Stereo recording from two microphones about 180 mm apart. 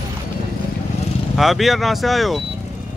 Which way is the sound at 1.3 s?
Centre (ahead or behind).